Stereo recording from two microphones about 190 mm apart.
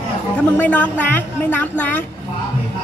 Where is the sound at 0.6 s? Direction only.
10° left (ahead or behind).